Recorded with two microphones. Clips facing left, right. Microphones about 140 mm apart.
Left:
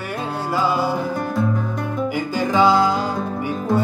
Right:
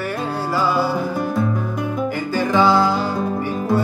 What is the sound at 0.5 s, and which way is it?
Music, 20° left (ahead or behind).